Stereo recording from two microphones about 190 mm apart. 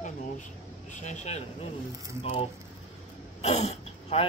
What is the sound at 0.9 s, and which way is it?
Speech, 40° left (ahead or behind).